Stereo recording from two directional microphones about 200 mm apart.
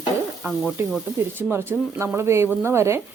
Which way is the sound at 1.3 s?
10° right (ahead or behind).